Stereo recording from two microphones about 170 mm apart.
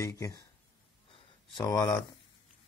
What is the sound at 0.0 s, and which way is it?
Speech, 20° left (ahead or behind).